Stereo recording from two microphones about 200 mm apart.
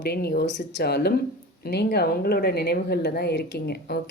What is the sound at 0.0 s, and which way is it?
Speech, 50° left (ahead or behind).